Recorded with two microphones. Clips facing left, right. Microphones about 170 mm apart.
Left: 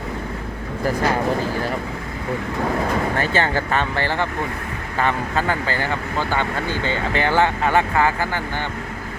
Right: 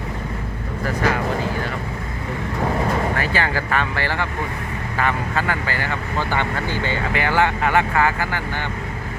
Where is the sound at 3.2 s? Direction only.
25° left (ahead or behind).